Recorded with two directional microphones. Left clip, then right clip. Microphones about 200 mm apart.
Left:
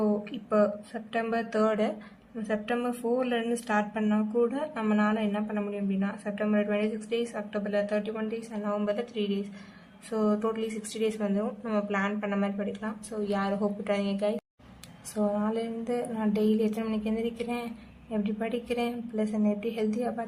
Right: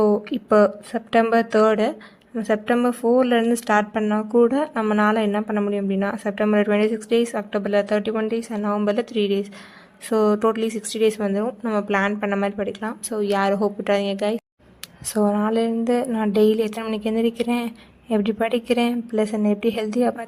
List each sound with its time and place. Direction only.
0.0 s a woman's voice: 50° right (ahead or behind)
2.3 s a woman's voice: 50° right (ahead or behind)